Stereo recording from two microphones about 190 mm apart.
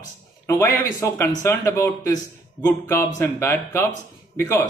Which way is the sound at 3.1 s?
10° left (ahead or behind).